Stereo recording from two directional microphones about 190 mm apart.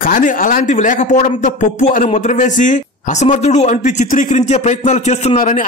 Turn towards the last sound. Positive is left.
turn(degrees=35)  # may be behind; listen again after turning